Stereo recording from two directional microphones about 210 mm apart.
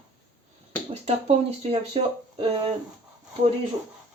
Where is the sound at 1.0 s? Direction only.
30° right (ahead or behind).